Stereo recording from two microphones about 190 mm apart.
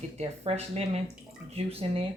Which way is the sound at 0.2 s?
35° right (ahead or behind).